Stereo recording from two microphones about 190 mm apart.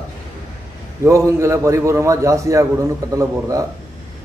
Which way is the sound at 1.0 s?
15° right (ahead or behind).